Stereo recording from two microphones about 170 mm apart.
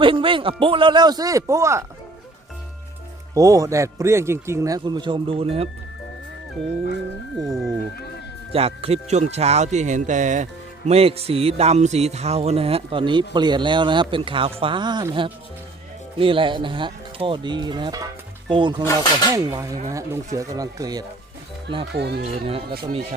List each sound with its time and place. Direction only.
0.0 s speech: 30° right (ahead or behind)
3.3 s speech: 20° right (ahead or behind)
7.3 s speech: centre (ahead or behind)
8.5 s speech: 35° right (ahead or behind)
18.9 s speech: 25° left (ahead or behind)
19.3 s speech: 20° right (ahead or behind)
21.9 s speech: 75° right (ahead or behind)
22.3 s speech: 35° right (ahead or behind)